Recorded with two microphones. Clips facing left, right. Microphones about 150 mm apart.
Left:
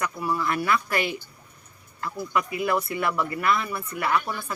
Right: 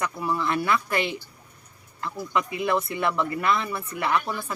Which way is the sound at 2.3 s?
25° right (ahead or behind).